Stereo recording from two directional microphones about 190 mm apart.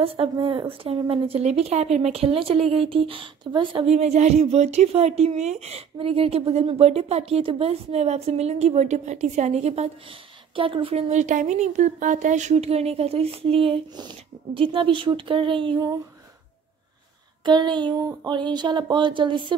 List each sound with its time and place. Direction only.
0.0 s speech: 30° right (ahead or behind)
17.5 s speech: 25° right (ahead or behind)